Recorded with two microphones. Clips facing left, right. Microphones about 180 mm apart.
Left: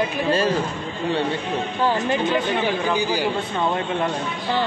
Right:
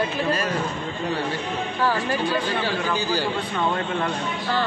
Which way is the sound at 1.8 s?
20° left (ahead or behind).